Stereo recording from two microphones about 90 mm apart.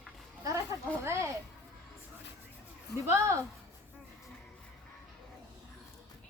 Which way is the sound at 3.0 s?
30° right (ahead or behind).